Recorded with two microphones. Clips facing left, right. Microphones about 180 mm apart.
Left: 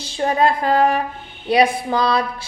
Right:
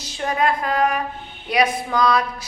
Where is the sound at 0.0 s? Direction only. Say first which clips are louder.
Left 4 dB; 30° left (ahead or behind).